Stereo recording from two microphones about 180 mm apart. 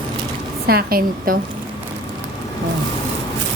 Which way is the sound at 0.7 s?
55° right (ahead or behind).